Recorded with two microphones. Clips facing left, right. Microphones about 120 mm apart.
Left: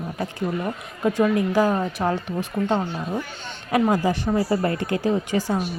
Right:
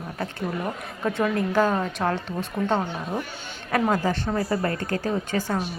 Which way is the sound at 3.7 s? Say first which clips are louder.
Left 3 dB; 15° left (ahead or behind).